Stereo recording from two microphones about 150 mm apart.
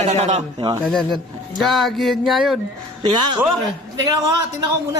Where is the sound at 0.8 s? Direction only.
Centre (ahead or behind).